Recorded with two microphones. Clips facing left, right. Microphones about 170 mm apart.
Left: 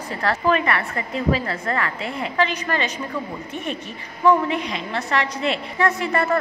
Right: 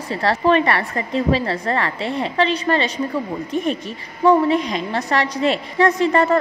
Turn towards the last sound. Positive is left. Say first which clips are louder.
# right 5 dB
turn(degrees=-35)  # may be behind; listen again after turning